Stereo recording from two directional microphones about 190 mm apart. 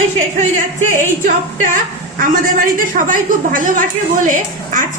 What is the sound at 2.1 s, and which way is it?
A woman's voice, 45° right (ahead or behind).